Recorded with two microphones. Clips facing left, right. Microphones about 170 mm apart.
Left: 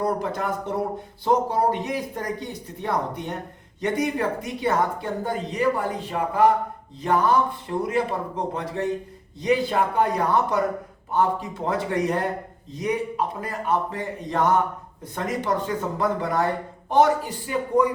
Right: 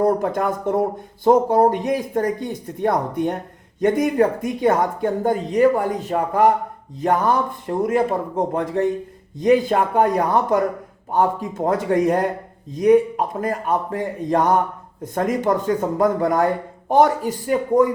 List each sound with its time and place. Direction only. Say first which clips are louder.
0.0 s speech: right 6 dB; 50° right (ahead or behind)
7.8 s speech: right 5 dB; 45° right (ahead or behind)
11.1 s speech: right 3 dB; 45° right (ahead or behind)